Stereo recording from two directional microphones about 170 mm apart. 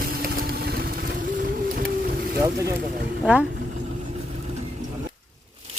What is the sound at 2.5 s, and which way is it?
Speech, 20° right (ahead or behind).